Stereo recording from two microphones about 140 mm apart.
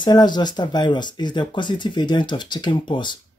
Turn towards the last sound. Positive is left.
turn(degrees=35)  # may be behind; listen again after turning